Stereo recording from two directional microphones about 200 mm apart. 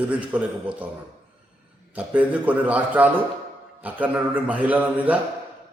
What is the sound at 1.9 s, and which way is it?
A man's voice, 5° right (ahead or behind).